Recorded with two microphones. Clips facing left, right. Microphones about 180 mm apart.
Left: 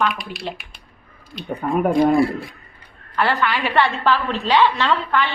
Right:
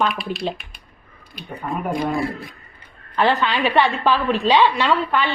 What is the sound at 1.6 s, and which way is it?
Speech, 50° left (ahead or behind).